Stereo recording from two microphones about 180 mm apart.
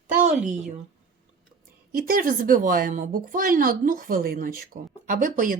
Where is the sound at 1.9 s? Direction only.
55° right (ahead or behind).